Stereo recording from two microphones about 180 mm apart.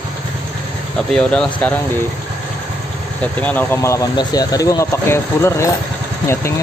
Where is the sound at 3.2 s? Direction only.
10° left (ahead or behind).